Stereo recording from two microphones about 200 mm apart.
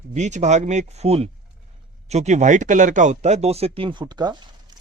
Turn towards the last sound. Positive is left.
turn(degrees=-20)  # may be behind; listen again after turning